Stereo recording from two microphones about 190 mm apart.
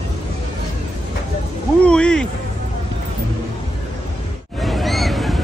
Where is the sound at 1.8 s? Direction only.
5° left (ahead or behind).